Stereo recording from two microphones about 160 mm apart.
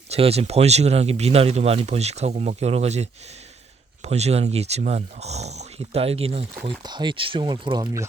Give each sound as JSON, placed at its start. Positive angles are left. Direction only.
{"t": 0.1, "sound": "speech", "side_deg": -40}
{"t": 6.8, "sound": "speech", "side_deg": -30}